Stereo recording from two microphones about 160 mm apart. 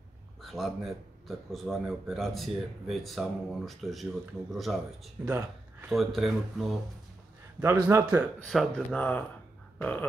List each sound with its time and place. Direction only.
0.4 s a sound: centre (ahead or behind)
1.2 s speech: centre (ahead or behind)
5.3 s a sound: 15° right (ahead or behind)
5.9 s speech: centre (ahead or behind)
7.6 s speech: 20° right (ahead or behind)
8.5 s speech: 5° left (ahead or behind)